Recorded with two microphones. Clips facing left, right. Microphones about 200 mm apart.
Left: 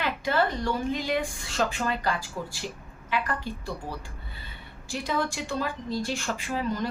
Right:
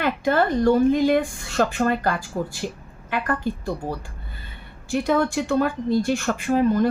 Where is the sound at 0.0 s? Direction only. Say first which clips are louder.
Right 6 dB; 50° right (ahead or behind).